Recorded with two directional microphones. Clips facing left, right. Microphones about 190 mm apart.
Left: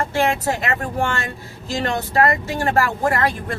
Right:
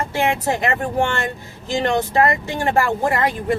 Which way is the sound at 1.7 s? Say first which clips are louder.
Right 3 dB; 20° right (ahead or behind).